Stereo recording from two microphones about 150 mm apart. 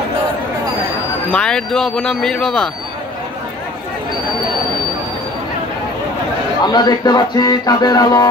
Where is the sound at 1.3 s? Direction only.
5° left (ahead or behind).